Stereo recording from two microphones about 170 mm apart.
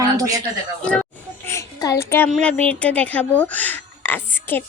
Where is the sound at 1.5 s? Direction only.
15° left (ahead or behind).